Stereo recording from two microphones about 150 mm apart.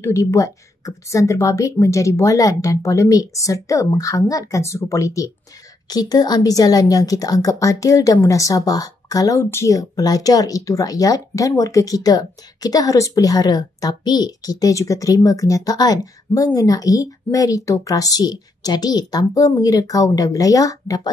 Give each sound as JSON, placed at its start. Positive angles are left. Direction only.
{"t": 0.0, "sound": "a woman's voice", "side_deg": 20}